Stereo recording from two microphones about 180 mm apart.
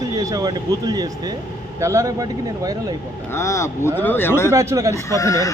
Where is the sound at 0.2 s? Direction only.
20° right (ahead or behind).